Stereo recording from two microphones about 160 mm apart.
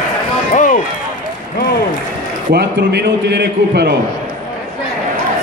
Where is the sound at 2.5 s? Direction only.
90° right.